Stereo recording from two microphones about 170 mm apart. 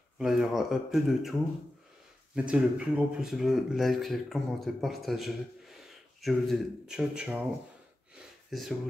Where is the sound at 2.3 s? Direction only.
5° right (ahead or behind).